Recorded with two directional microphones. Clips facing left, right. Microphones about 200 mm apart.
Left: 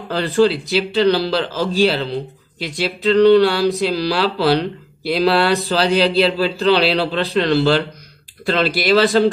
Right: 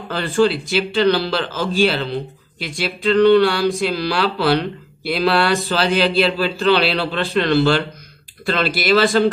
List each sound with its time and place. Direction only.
0.1 s a man's voice: 35° left (ahead or behind)